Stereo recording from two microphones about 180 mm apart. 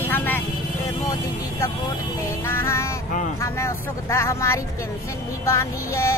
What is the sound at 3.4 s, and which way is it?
Speech, 15° left (ahead or behind).